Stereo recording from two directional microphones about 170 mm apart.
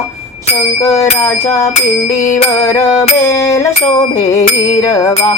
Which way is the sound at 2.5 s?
20° left (ahead or behind).